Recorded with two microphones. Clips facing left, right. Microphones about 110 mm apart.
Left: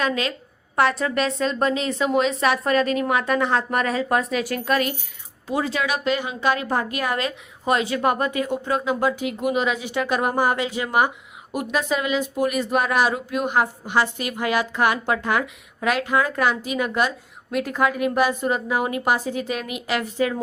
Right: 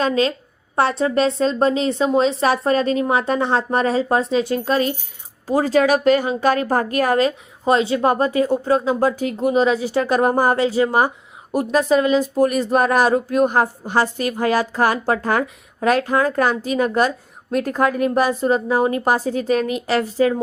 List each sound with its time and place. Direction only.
0.0 s a woman's voice: 30° right (ahead or behind)